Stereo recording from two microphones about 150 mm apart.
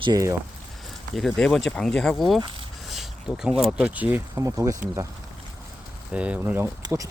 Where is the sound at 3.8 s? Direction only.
10° right (ahead or behind).